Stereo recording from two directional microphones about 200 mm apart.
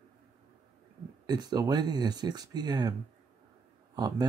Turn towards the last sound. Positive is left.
turn(degrees=-20)  # may be behind; listen again after turning